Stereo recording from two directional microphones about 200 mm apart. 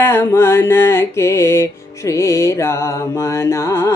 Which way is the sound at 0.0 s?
10° left (ahead or behind).